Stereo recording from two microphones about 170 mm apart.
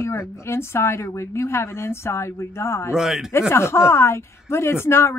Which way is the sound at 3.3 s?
15° left (ahead or behind).